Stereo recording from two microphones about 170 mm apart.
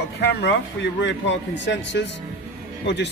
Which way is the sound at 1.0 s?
90° left.